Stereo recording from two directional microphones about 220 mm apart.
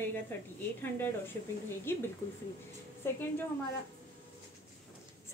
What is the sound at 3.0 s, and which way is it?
Speech, 10° left (ahead or behind).